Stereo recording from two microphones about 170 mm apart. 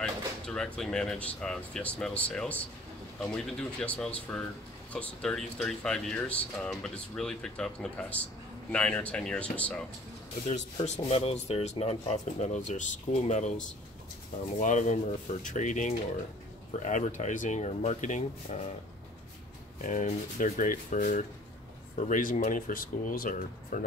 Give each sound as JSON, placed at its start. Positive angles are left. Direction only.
{"t": 0.0, "sound": "drawer open or close", "side_deg": 5}
{"t": 0.7, "sound": "speech", "side_deg": 5}
{"t": 10.4, "sound": "speech", "side_deg": 40}
{"t": 19.8, "sound": "speech", "side_deg": 45}